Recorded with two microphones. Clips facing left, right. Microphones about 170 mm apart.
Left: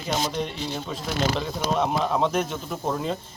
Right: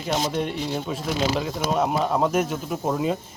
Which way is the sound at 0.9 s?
5° right (ahead or behind).